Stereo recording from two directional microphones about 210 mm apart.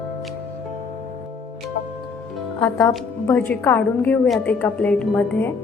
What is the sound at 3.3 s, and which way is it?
A woman's voice, 10° left (ahead or behind).